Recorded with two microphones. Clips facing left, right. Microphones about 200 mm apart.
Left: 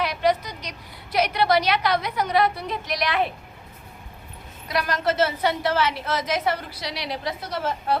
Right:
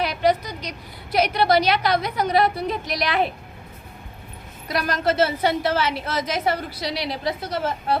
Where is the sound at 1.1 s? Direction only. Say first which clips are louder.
Right 2 dB; 35° right (ahead or behind).